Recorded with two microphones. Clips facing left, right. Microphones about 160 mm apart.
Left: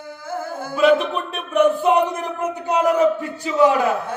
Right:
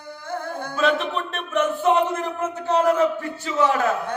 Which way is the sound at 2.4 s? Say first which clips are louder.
Left 1 dB; 15° left (ahead or behind).